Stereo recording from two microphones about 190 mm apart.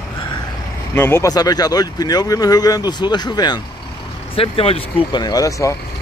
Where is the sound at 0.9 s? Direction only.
10° left (ahead or behind).